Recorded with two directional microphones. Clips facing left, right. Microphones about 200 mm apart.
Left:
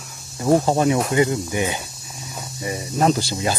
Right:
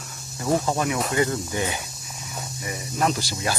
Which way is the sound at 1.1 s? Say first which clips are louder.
Left 4 dB; 15° left (ahead or behind).